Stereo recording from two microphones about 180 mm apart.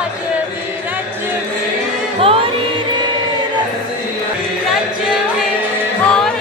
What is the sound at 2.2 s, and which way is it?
Music, 30° right (ahead or behind).